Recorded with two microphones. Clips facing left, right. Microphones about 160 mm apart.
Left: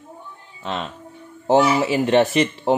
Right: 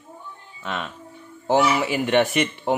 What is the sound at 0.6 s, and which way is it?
A man's voice, 30° left (ahead or behind).